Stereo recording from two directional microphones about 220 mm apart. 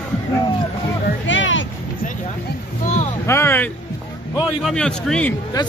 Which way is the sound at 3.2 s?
10° left (ahead or behind).